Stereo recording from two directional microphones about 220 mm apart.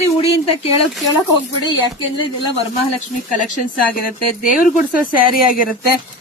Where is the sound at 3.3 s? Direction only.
35° left (ahead or behind).